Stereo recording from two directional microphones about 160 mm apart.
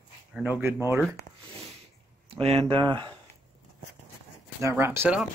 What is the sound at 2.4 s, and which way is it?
Speech, 40° right (ahead or behind).